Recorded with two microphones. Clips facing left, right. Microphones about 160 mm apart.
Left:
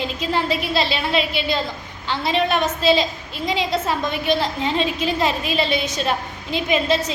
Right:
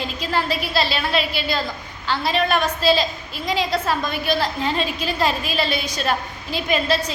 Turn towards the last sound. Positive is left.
turn(degrees=20)  # may be behind; listen again after turning